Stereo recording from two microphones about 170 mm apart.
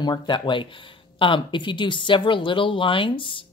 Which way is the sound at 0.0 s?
25° left (ahead or behind).